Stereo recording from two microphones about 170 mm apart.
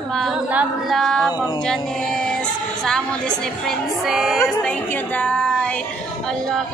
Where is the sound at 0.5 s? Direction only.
Centre (ahead or behind).